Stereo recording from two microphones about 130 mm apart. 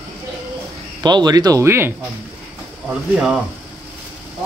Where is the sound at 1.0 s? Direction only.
30° right (ahead or behind).